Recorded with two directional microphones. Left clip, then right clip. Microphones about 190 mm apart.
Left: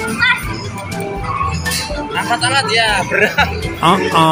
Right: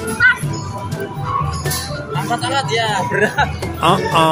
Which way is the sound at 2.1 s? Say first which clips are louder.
Left 4 dB; 5° right (ahead or behind).